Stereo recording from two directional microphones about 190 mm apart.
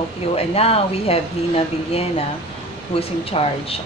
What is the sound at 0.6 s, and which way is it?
Speech, 30° left (ahead or behind).